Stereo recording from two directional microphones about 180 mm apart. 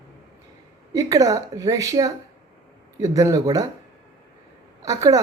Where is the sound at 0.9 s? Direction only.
20° right (ahead or behind).